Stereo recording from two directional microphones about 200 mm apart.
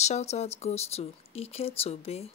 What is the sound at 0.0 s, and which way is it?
Speech, 35° left (ahead or behind).